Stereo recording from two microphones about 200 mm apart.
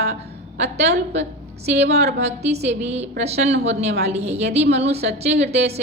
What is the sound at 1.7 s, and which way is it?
Speech, 55° right (ahead or behind).